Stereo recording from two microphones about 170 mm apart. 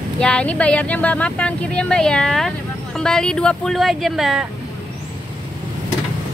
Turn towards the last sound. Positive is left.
turn(degrees=0)  # may be behind; listen again after turning